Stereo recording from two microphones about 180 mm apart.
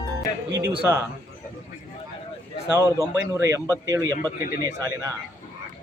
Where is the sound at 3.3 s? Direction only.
15° right (ahead or behind).